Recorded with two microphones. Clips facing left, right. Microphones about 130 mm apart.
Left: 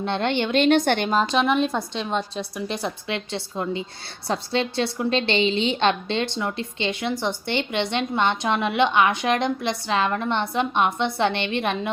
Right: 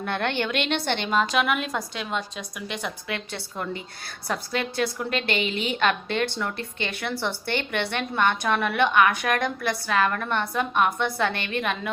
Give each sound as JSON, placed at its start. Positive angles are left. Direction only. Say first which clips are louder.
{"t": 0.0, "sound": "a woman's voice", "louder": "left 3 dB", "side_deg": 20}
{"t": 0.5, "sound": "a woman's voice", "louder": "left 8 dB", "side_deg": 40}
{"t": 3.3, "sound": "a woman's voice", "louder": "left 5 dB", "side_deg": 20}